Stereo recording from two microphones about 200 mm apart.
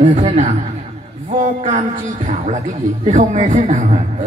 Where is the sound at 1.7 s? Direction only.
40° right (ahead or behind).